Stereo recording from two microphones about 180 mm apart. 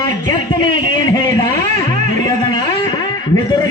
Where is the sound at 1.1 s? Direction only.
20° left (ahead or behind).